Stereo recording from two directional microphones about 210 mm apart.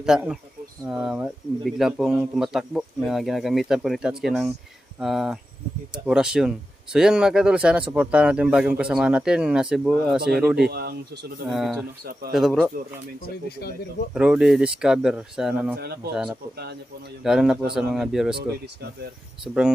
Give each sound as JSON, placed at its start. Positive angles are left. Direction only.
{"t": 0.0, "sound": "a man's voice", "side_deg": -5}
{"t": 10.7, "sound": "speech", "side_deg": -50}
{"t": 11.4, "sound": "a man's voice", "side_deg": 0}
{"t": 14.1, "sound": "a man's voice", "side_deg": -5}
{"t": 15.8, "sound": "speech", "side_deg": -50}
{"t": 17.2, "sound": "a man's voice", "side_deg": 0}